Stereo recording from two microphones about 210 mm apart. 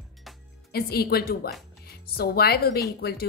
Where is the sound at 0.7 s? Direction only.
50° left (ahead or behind).